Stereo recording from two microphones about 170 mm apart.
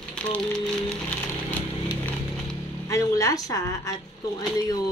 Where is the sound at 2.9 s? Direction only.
20° left (ahead or behind).